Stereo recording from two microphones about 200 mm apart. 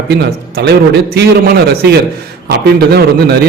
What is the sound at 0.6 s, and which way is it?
A man's voice, 55° right (ahead or behind).